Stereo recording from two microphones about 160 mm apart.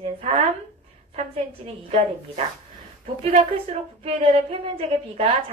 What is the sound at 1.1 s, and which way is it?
Speech, 40° right (ahead or behind).